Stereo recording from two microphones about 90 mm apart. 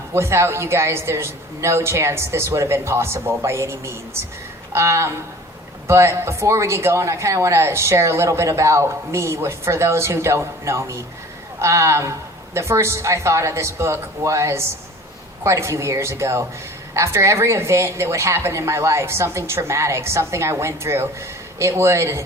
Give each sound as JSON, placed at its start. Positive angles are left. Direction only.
{"t": 0.1, "sound": "speech", "side_deg": -30}